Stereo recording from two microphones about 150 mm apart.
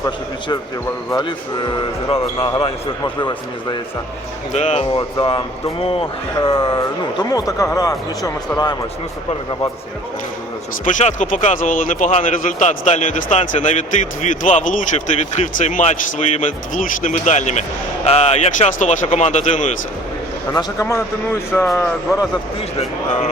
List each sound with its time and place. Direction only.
1.1 s speech: 30° left (ahead or behind)
4.5 s speech: 45° left (ahead or behind)
4.9 s speech: 35° left (ahead or behind)
7.3 s speech: 25° left (ahead or behind)
10.8 s speech: 55° left (ahead or behind)
20.5 s a man's voice: 25° left (ahead or behind)